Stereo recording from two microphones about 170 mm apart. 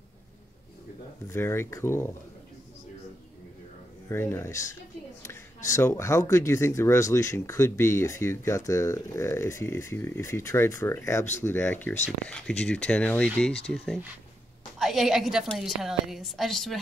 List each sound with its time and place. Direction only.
1.2 s speech: 15° left (ahead or behind)
4.1 s speech: 15° left (ahead or behind)
14.8 s a woman's voice: centre (ahead or behind)